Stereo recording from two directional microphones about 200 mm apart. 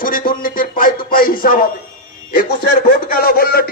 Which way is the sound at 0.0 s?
45° left (ahead or behind).